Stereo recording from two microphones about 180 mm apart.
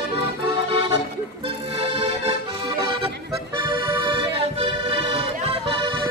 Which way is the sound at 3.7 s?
25° right (ahead or behind).